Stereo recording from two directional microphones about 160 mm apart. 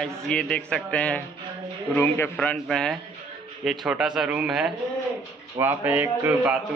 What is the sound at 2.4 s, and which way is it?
A man's voice, 5° left (ahead or behind).